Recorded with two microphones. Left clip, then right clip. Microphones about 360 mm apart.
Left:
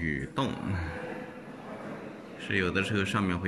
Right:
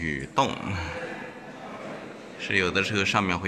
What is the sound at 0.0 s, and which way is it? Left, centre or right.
Speech, centre.